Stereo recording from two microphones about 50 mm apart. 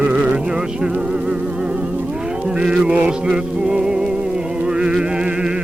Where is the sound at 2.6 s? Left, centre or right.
Centre.